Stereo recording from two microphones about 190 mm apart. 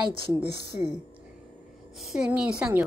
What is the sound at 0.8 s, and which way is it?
Speech, 40° left (ahead or behind).